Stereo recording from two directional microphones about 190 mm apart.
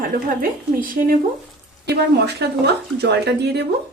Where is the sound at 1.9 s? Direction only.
60° right (ahead or behind).